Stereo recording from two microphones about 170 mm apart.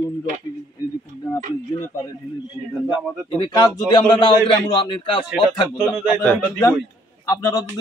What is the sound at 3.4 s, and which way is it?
A man's voice, 25° left (ahead or behind).